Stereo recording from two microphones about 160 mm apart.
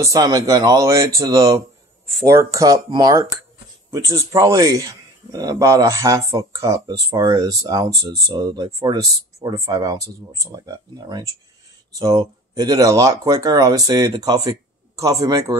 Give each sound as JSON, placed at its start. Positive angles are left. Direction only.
{"t": 0.0, "sound": "a man's voice", "side_deg": -25}